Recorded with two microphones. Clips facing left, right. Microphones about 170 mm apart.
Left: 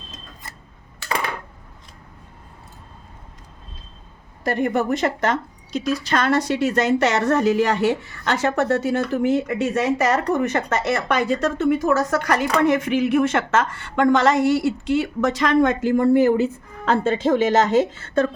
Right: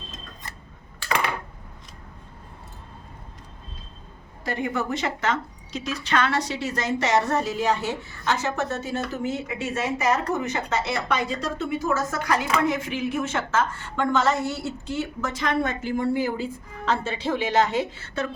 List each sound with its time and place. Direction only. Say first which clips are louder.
4.4 s a woman's voice: left 6 dB; 55° left (ahead or behind); by 7.8 s 75° left (ahead or behind)
8.2 s speech: left 4 dB; 65° left (ahead or behind)
9.2 s a woman's voice: left 8 dB; 60° left (ahead or behind); by 16.0 s 85° left
16.0 s a woman's voice: left 9 dB; 60° left (ahead or behind)
17.2 s a woman's voice: left 4 dB; 45° left (ahead or behind)